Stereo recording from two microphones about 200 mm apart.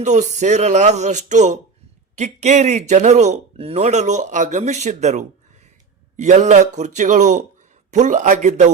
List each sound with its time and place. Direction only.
0.0 s speech: 35° right (ahead or behind)